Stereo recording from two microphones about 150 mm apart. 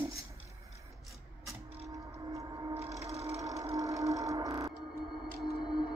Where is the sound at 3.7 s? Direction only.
20° right (ahead or behind).